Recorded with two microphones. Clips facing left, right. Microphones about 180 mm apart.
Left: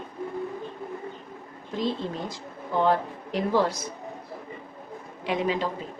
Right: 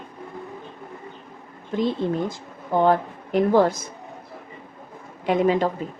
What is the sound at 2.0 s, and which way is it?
A woman's voice, 50° right (ahead or behind).